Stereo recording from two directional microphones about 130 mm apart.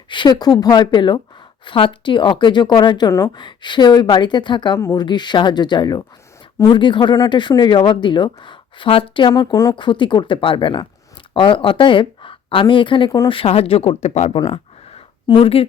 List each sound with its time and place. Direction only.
0.1 s speech: 35° left (ahead or behind)
3.1 s speech: 20° left (ahead or behind)
3.3 s speech: 35° left (ahead or behind); by 14.3 s 60° left (ahead or behind)
14.3 s a sound: 50° left (ahead or behind)
15.3 s speech: 45° left (ahead or behind)